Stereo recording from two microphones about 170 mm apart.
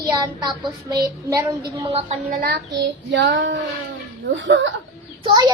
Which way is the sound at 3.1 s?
90° right.